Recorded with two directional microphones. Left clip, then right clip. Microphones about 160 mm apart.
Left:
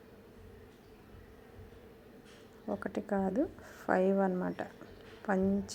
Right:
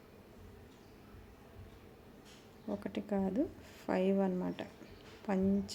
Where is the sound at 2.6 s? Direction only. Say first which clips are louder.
Left 4 dB; 10° right (ahead or behind).